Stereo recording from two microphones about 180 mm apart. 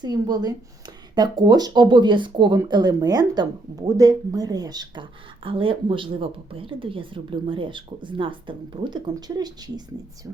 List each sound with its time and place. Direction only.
0.0 s speech: 20° right (ahead or behind)